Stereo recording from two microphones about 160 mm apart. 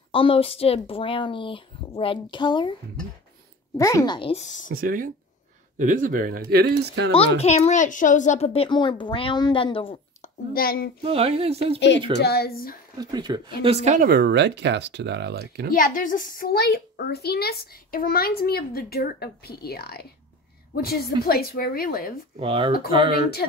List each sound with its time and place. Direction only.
0.1 s speech: 35° left (ahead or behind)
3.7 s speech: 20° left (ahead or behind); by 4.6 s 45° left (ahead or behind)
4.7 s speech: 60° right (ahead or behind); by 7.1 s 85° right
7.1 s speech: 40° left (ahead or behind)
10.2 s a child's voice: 65° left (ahead or behind)
11.0 s speech: 35° right (ahead or behind)
12.2 s a child's voice: 80° left
12.9 s speech: 25° right (ahead or behind); by 14.0 s 45° right (ahead or behind)
14.0 s speech: 90° right
15.7 s a child's voice: 55° left (ahead or behind)
22.4 s speech: 35° right (ahead or behind)